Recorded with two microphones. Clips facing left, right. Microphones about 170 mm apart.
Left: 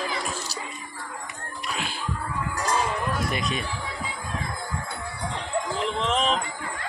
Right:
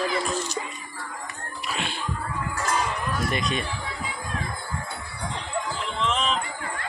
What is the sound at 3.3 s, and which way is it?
Speech, 5° left (ahead or behind).